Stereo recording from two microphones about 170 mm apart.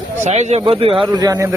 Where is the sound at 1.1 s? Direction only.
20° right (ahead or behind).